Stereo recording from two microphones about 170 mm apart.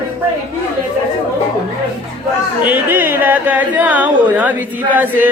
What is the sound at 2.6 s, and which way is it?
A man's voice, 10° right (ahead or behind).